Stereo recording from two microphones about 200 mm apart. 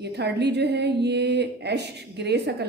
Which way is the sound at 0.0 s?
55° right (ahead or behind).